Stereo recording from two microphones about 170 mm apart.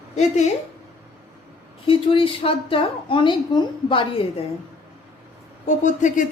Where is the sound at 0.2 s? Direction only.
40° left (ahead or behind).